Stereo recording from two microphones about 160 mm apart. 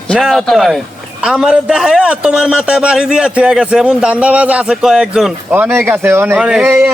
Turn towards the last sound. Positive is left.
turn(degrees=-15)  # may be behind; listen again after turning